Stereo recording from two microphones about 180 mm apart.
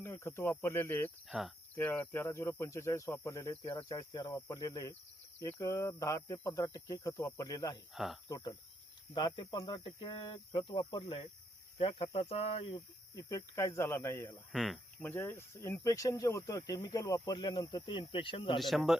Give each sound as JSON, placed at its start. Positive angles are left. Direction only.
{"t": 0.0, "sound": "speech", "side_deg": 15}
{"t": 1.3, "sound": "speech", "side_deg": 0}
{"t": 1.7, "sound": "speech", "side_deg": 10}
{"t": 7.9, "sound": "speech", "side_deg": 0}
{"t": 8.3, "sound": "speech", "side_deg": 20}
{"t": 14.5, "sound": "speech", "side_deg": 0}
{"t": 15.0, "sound": "speech", "side_deg": 10}
{"t": 18.6, "sound": "speech", "side_deg": 0}